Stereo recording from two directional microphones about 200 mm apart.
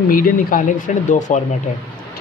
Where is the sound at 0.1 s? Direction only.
45° left (ahead or behind).